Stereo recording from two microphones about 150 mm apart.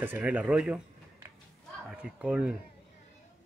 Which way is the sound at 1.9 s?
5° right (ahead or behind).